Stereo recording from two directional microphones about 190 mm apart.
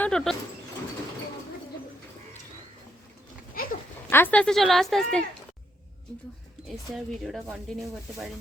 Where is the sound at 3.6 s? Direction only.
50° left (ahead or behind).